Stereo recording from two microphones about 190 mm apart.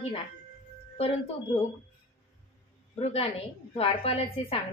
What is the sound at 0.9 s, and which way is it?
Speech, 30° left (ahead or behind).